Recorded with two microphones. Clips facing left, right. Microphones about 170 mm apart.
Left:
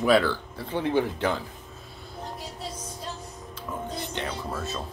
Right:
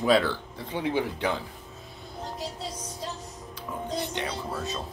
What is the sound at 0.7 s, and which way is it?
Speech, 15° right (ahead or behind).